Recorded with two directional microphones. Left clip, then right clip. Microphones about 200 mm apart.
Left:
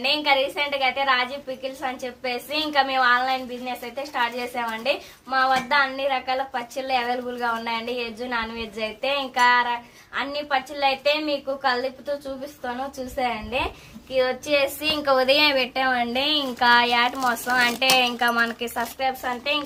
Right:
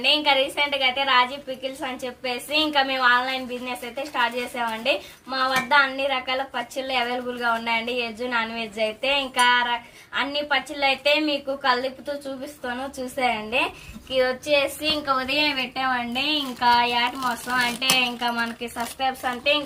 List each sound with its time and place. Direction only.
0.0 s a woman's voice: 15° left (ahead or behind)
13.1 s a woman's voice: 5° left (ahead or behind)
14.8 s a woman's voice: 60° left (ahead or behind)
18.9 s a woman's voice: 15° left (ahead or behind)